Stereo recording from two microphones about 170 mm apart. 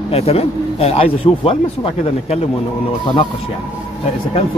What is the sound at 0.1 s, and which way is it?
Speech, 35° left (ahead or behind).